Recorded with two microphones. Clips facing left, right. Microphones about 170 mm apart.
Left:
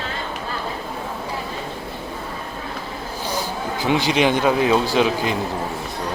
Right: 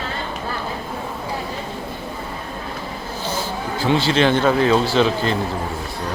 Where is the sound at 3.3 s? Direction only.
15° left (ahead or behind).